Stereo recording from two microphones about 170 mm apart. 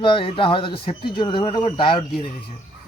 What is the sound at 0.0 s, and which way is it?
Speech, 30° left (ahead or behind).